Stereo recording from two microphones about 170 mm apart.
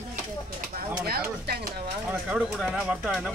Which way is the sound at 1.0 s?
65° right (ahead or behind).